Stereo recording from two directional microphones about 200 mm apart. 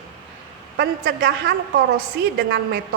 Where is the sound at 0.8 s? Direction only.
50° right (ahead or behind).